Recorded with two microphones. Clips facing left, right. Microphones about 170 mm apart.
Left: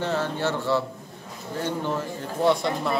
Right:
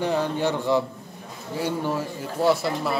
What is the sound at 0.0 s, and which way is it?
A man's voice, 15° right (ahead or behind).